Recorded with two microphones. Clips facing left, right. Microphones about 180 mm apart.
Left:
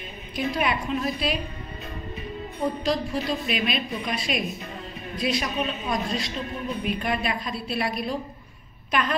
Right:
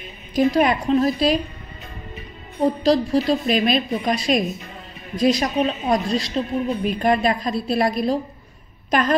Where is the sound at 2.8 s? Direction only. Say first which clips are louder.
Right 8 dB; 35° right (ahead or behind).